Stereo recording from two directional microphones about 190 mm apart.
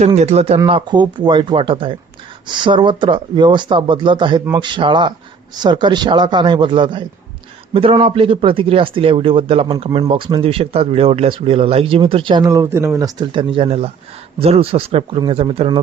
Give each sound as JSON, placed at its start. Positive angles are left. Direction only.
{"t": 0.2, "sound": "speech", "side_deg": -35}